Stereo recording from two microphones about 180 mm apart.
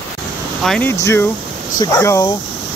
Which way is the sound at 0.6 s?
5° left (ahead or behind).